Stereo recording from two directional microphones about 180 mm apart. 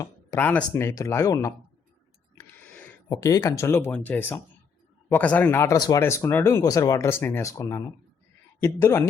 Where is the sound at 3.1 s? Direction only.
20° left (ahead or behind).